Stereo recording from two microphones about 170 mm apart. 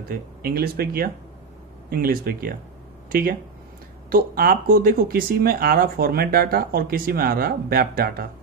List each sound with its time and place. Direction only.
0.1 s speech: 60° right (ahead or behind)